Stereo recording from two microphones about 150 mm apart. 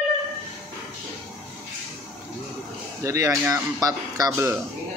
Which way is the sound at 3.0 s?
20° right (ahead or behind).